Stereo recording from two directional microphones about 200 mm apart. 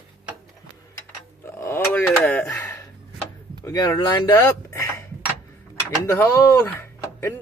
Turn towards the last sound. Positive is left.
turn(degrees=10)  # may be behind; listen again after turning